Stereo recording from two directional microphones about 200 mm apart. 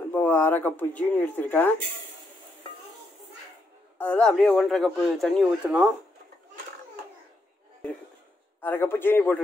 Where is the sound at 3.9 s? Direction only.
5° left (ahead or behind).